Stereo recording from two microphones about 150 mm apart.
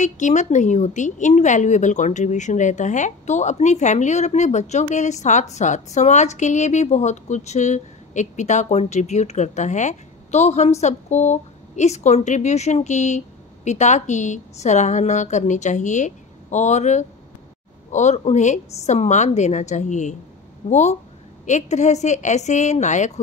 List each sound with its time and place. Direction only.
0.0 s a woman's voice: 55° left (ahead or behind)